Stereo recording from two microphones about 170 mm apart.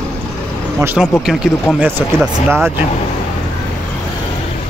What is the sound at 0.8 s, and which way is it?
Speech, 15° right (ahead or behind).